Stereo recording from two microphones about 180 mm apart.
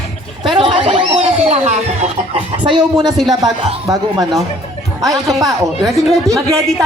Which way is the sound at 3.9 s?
20° right (ahead or behind).